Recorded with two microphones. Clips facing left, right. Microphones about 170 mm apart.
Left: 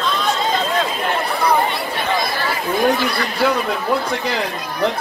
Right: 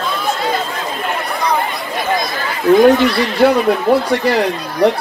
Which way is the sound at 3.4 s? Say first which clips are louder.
Right 7 dB; 60° right (ahead or behind).